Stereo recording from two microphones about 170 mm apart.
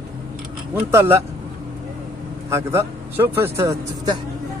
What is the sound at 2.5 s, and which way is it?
Speech, 15° right (ahead or behind).